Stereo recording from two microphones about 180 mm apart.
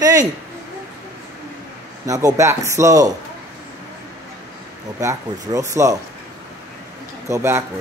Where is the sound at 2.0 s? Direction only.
20° right (ahead or behind).